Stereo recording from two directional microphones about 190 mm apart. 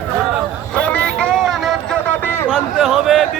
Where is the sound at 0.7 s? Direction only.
5° left (ahead or behind).